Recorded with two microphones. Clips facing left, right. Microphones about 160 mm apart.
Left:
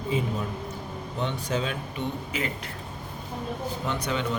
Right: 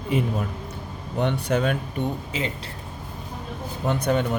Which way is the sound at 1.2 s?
60° right (ahead or behind).